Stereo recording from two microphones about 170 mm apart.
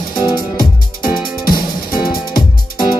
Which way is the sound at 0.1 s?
25° left (ahead or behind).